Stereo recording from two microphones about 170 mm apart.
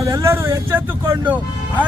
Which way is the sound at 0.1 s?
15° right (ahead or behind).